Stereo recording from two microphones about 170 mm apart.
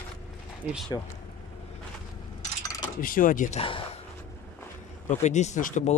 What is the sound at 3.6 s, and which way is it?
Speech, 30° left (ahead or behind).